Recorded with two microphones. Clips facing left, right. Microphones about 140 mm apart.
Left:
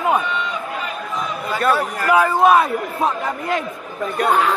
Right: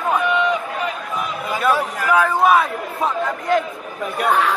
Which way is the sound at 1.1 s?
10° right (ahead or behind).